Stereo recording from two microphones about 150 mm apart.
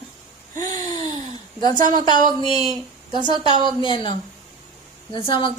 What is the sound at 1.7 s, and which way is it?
Speech, 60° right (ahead or behind).